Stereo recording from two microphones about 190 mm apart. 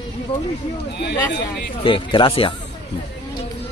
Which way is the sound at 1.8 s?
25° left (ahead or behind).